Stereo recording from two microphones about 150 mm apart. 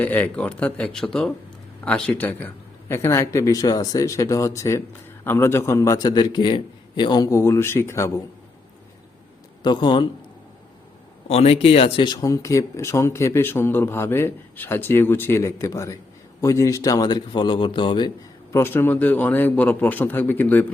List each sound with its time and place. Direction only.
0.0 s a man's voice: 10° left (ahead or behind)
9.6 s speech: 30° left (ahead or behind)
11.3 s a man's voice: 40° left (ahead or behind)
18.5 s speech: 15° left (ahead or behind)